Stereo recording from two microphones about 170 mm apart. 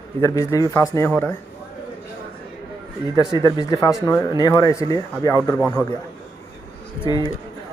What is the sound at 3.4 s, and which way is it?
Speech, 20° left (ahead or behind).